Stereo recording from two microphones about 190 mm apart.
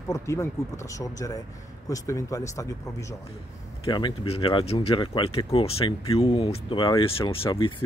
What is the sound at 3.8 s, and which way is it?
Speech, 25° left (ahead or behind).